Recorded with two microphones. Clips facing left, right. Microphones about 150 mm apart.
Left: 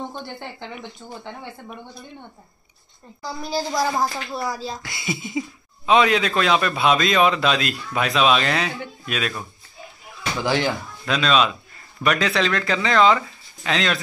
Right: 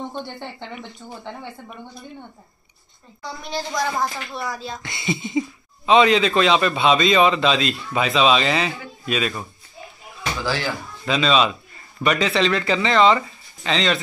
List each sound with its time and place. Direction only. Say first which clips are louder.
0.1 s a man's voice: right 2 dB; 5° left (ahead or behind)
3.2 s a man's voice: left 3 dB; 5° left (ahead or behind)
4.5 s speech: left 2 dB; 30° left (ahead or behind)
4.8 s a man's voice: right 3 dB; centre (ahead or behind)
10.4 s speech: left 4 dB; 20° left (ahead or behind)
11.1 s a man's voice: right 1 dB; centre (ahead or behind)